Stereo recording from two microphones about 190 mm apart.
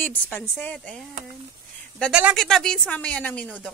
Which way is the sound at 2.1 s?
Centre (ahead or behind).